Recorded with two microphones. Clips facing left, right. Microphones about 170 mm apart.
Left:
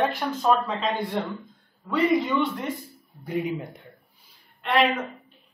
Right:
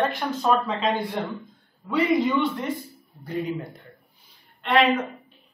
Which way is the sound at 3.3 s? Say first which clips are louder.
Left 1 dB; 15° left (ahead or behind).